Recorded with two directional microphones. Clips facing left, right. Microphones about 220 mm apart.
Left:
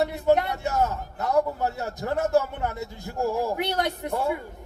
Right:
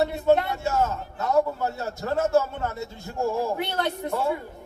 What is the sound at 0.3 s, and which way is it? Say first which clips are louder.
A man's voice: even; 20° left (ahead or behind).